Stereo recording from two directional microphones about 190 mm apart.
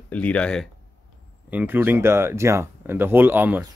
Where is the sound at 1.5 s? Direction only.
10° right (ahead or behind).